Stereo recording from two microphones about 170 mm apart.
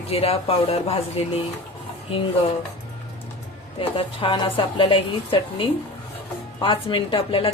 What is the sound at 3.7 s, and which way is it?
Speech, 30° left (ahead or behind).